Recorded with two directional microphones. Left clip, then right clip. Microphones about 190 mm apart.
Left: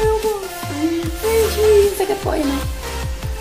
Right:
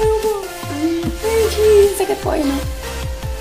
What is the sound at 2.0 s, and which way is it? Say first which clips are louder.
Music: right 1 dB; 15° right (ahead or behind).